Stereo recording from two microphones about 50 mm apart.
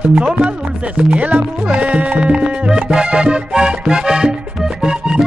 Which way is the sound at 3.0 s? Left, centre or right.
Centre.